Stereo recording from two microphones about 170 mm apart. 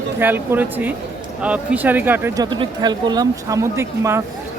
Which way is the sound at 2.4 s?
25° right (ahead or behind).